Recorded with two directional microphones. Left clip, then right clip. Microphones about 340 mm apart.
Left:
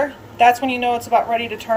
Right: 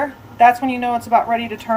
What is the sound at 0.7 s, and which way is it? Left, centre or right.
A woman's voice, centre.